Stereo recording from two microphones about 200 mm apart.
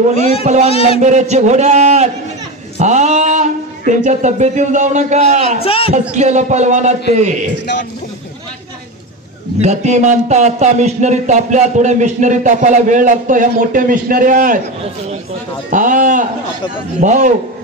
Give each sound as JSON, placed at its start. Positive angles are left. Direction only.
{"t": 0.2, "sound": "speech", "side_deg": 30}
{"t": 1.0, "sound": "a man's voice", "side_deg": -35}
{"t": 5.6, "sound": "a man's voice", "side_deg": 30}
{"t": 5.9, "sound": "a man's voice", "side_deg": -35}
{"t": 9.6, "sound": "a man's voice", "side_deg": -35}
{"t": 15.7, "sound": "a man's voice", "side_deg": -40}